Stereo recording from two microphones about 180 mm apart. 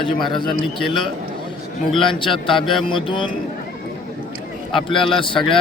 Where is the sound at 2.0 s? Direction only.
25° left (ahead or behind).